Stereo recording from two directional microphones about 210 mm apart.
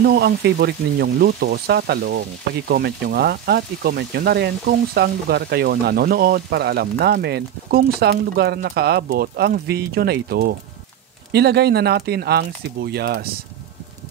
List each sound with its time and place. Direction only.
0.0 s speech: 50° right (ahead or behind)